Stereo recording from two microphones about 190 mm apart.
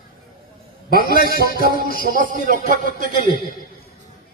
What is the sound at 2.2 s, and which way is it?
Speech, 45° right (ahead or behind).